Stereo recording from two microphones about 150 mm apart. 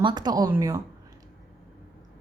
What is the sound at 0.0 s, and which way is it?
Speech, 30° right (ahead or behind).